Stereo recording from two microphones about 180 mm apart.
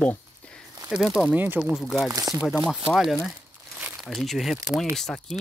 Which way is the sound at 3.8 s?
10° right (ahead or behind).